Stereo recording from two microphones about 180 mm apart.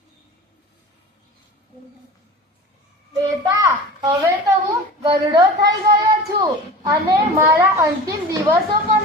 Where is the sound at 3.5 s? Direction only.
15° right (ahead or behind).